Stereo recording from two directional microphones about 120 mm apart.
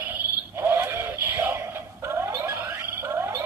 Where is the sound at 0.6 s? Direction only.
20° right (ahead or behind).